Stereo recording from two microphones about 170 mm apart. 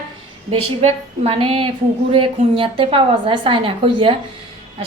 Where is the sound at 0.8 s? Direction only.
35° right (ahead or behind).